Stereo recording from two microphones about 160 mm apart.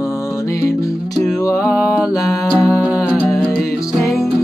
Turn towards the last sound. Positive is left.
turn(degrees=0)  # may be behind; listen again after turning